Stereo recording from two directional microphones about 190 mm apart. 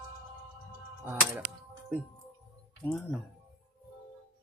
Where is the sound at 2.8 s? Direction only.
10° left (ahead or behind).